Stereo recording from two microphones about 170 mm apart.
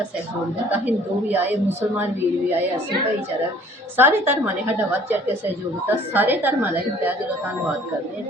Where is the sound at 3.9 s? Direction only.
15° right (ahead or behind).